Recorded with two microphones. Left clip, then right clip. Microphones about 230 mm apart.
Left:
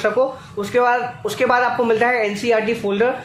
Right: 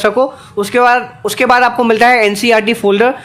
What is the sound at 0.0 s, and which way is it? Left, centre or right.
Speech, right.